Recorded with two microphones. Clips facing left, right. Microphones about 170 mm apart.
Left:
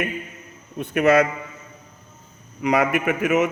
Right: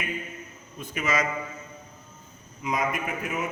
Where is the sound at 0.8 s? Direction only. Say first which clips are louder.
Left 11 dB; 60° left (ahead or behind).